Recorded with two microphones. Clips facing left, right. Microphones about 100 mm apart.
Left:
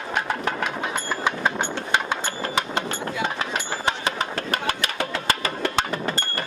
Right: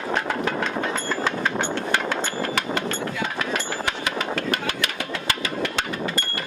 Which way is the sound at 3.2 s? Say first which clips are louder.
Even; 30° left (ahead or behind).